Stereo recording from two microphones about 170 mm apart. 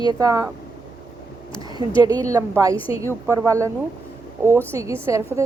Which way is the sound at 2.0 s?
20° right (ahead or behind).